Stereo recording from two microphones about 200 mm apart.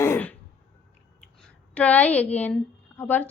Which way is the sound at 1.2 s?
5° left (ahead or behind).